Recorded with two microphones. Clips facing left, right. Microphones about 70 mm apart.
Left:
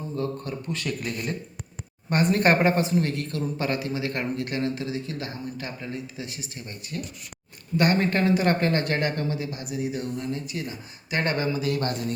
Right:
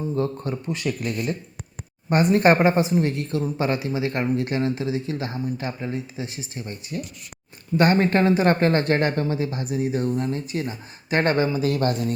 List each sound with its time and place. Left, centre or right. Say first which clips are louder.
0.2 s speech: right 4 dB; right
2.0 s speech: right 4 dB; right